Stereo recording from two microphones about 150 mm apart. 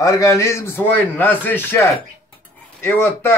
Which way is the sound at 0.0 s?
20° left (ahead or behind).